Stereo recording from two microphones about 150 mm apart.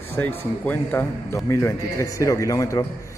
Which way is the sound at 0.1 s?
15° left (ahead or behind).